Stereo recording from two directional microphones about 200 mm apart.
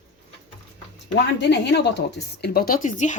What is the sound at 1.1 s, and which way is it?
Speech, 55° left (ahead or behind).